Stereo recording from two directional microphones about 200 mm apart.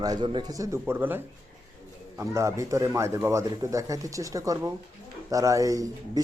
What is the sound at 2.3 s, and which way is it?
Speech, 15° right (ahead or behind).